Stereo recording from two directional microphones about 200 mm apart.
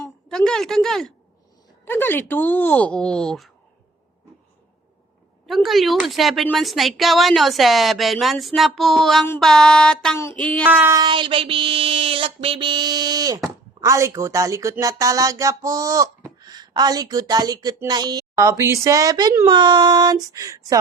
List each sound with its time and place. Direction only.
0.3 s a woman's voice: 5° left (ahead or behind)
5.5 s a woman's voice: centre (ahead or behind)
10.7 s speech: 10° right (ahead or behind)
11.0 s child singing: 25° right (ahead or behind)
13.8 s speech: 15° right (ahead or behind)